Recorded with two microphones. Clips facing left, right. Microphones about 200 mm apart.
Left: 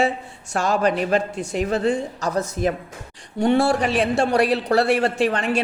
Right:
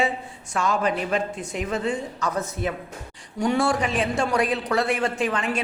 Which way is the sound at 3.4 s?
60° left (ahead or behind).